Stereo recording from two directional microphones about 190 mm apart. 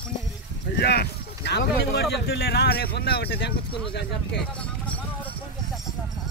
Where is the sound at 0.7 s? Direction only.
60° left (ahead or behind).